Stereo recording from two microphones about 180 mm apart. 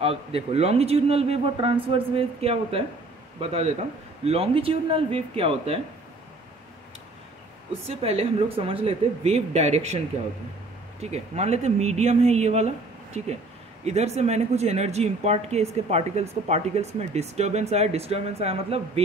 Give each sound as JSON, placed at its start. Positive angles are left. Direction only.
{"t": 0.0, "sound": "a woman's voice", "side_deg": -30}
{"t": 7.7, "sound": "a woman's voice", "side_deg": -35}